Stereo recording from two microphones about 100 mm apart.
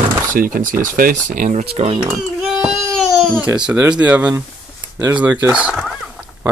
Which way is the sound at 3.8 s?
15° right (ahead or behind).